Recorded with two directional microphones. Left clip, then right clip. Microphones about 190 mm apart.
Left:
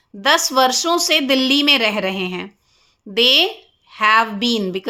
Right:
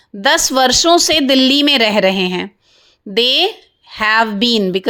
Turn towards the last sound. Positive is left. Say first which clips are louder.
# right 6 dB
turn(degrees=-40)  # may be behind; listen again after turning